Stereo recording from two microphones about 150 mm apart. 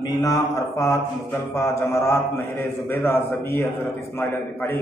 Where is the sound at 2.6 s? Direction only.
15° left (ahead or behind).